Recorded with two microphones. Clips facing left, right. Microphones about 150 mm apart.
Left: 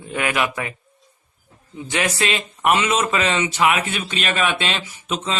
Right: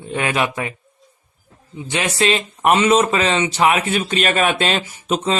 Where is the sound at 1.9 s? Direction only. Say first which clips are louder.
Right 3 dB; 25° right (ahead or behind).